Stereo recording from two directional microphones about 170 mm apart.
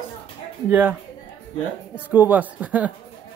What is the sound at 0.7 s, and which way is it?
Speech, 10° right (ahead or behind).